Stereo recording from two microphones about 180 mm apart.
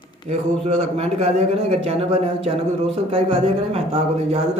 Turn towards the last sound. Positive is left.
turn(degrees=-35)  # may be behind; listen again after turning